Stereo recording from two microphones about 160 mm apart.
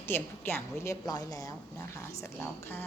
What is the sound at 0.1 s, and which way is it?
A woman's voice, 15° left (ahead or behind).